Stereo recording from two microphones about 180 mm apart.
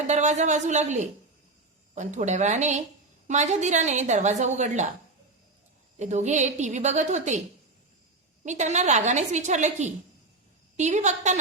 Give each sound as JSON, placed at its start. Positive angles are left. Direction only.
{"t": 0.1, "sound": "a woman's voice", "side_deg": -40}
{"t": 6.0, "sound": "a woman's voice", "side_deg": -40}
{"t": 8.4, "sound": "a woman's voice", "side_deg": -40}